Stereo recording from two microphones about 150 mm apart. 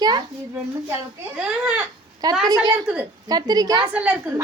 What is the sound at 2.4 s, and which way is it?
Speech, 25° right (ahead or behind).